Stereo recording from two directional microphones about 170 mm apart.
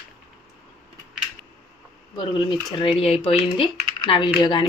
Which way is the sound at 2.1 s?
25° left (ahead or behind).